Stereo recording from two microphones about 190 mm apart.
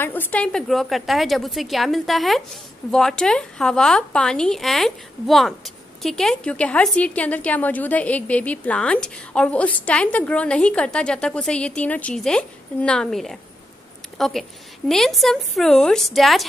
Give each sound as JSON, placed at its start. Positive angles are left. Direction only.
{"t": 0.0, "sound": "a woman's voice", "side_deg": 10}